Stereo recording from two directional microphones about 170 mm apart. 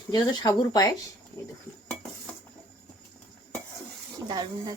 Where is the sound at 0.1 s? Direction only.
25° left (ahead or behind).